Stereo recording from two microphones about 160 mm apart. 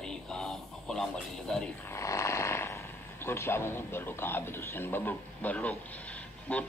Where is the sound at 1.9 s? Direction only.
20° left (ahead or behind).